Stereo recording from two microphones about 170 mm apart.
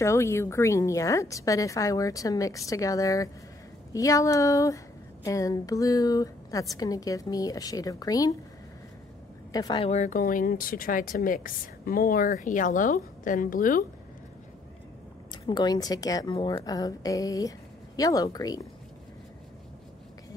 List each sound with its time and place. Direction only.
0.0 s speech: 15° left (ahead or behind)
9.5 s a woman's voice: 20° left (ahead or behind)
9.8 s speech: 40° left (ahead or behind)
15.3 s speech: 25° left (ahead or behind)